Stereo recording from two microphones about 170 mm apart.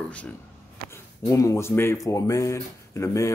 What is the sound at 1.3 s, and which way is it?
Speech, 20° left (ahead or behind).